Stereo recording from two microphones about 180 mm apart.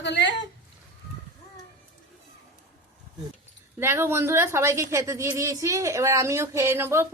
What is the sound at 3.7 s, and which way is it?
Speech, 15° right (ahead or behind).